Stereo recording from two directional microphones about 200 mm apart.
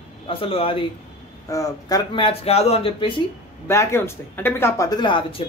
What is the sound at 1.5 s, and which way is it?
A woman's voice, 15° left (ahead or behind).